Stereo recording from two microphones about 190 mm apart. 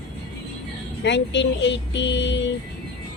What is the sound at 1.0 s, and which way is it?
Speech, 70° left (ahead or behind).